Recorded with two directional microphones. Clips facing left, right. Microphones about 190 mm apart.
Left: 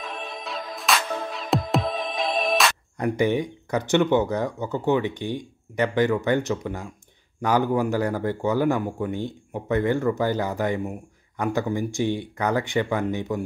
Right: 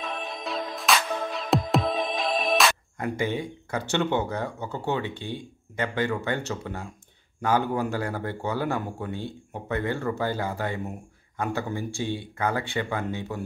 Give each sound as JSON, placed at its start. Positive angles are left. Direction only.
{"t": 0.4, "sound": "music", "side_deg": 0}
{"t": 3.0, "sound": "speech", "side_deg": 15}